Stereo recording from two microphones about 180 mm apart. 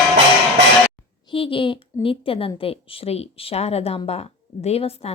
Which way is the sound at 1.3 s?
30° left (ahead or behind).